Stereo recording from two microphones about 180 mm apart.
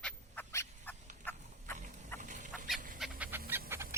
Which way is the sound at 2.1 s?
45° right (ahead or behind).